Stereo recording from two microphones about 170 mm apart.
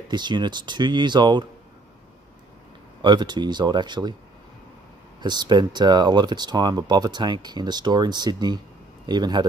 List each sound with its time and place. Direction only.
0.1 s speech: 25° right (ahead or behind)
3.0 s speech: 25° right (ahead or behind)
5.2 s speech: 25° right (ahead or behind)